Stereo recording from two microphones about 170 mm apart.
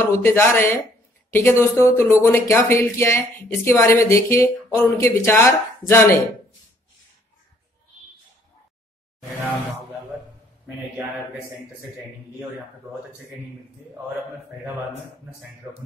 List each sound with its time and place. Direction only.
0.0 s speech: 15° left (ahead or behind)